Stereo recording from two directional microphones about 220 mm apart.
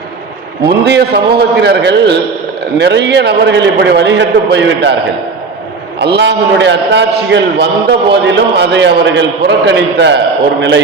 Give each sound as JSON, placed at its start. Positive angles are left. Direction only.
{"t": 0.6, "sound": "a man's voice", "side_deg": -50}
{"t": 6.0, "sound": "a man's voice", "side_deg": -50}